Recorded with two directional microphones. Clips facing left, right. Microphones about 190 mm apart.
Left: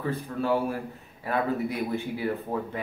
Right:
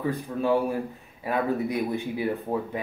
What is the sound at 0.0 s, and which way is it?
A man's voice, 15° right (ahead or behind).